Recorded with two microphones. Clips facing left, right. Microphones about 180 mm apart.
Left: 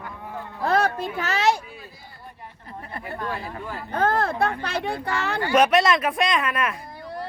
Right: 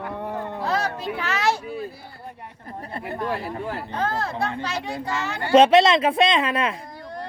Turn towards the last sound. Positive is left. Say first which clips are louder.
# right 3 dB
turn(degrees=-30)  # may be behind; listen again after turning